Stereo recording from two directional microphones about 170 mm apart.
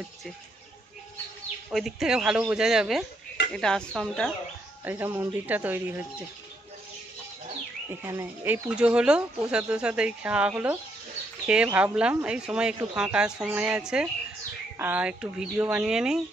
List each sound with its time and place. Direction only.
1.7 s speech: centre (ahead or behind)
4.8 s speech: 10° right (ahead or behind)
8.0 s speech: 15° right (ahead or behind)
8.6 s speech: 5° right (ahead or behind)